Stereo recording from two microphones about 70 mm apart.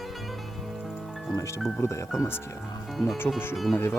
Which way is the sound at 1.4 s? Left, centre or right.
Left.